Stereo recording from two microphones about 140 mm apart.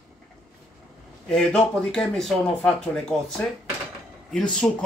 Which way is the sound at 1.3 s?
5° left (ahead or behind).